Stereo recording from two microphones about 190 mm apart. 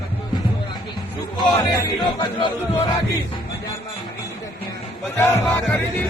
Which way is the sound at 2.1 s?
20° left (ahead or behind).